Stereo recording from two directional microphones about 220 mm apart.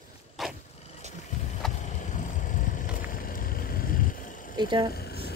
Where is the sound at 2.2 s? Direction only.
35° left (ahead or behind).